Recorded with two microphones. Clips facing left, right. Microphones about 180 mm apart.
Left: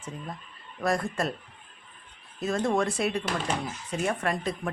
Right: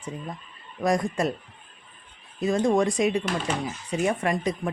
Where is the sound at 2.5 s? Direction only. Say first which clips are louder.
Right 4 dB; 15° right (ahead or behind).